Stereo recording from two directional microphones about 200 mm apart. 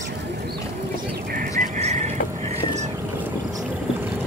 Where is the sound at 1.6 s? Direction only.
35° right (ahead or behind).